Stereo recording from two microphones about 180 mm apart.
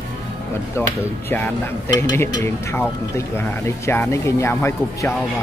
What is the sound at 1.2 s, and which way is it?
Speech, 10° left (ahead or behind).